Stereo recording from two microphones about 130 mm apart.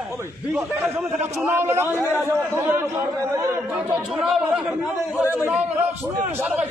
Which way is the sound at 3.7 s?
10° right (ahead or behind).